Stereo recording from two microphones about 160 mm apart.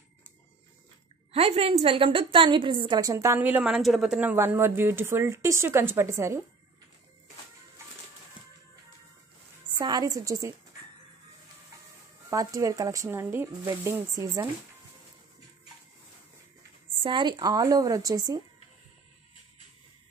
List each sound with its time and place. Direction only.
1.3 s a woman's voice: 40° right (ahead or behind); by 6.4 s 15° right (ahead or behind)
9.8 s speech: 25° right (ahead or behind)
12.3 s speech: 20° right (ahead or behind)
17.0 s speech: 30° right (ahead or behind)